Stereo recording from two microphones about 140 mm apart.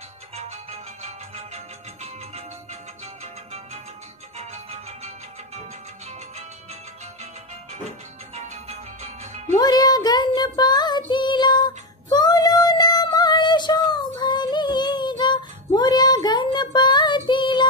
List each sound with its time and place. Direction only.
0.4 s music: 50° right (ahead or behind)
4.4 s music: 50° right (ahead or behind)
8.4 s music: 50° right (ahead or behind)
9.6 s child singing: 30° left (ahead or behind)